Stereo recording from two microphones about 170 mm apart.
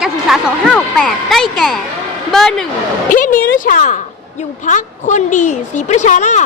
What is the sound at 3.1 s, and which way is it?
A woman's voice, 55° left (ahead or behind).